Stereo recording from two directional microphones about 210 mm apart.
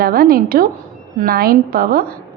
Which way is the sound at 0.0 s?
45° right (ahead or behind).